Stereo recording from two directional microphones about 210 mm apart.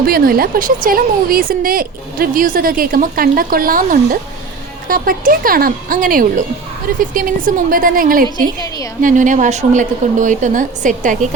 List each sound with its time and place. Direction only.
0.0 s a woman's voice: 45° right (ahead or behind)
8.6 s a woman's voice: 15° left (ahead or behind)
9.0 s a woman's voice: 40° right (ahead or behind)